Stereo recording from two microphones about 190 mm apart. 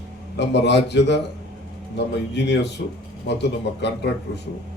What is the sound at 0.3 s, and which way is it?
A man's voice, 65° left (ahead or behind).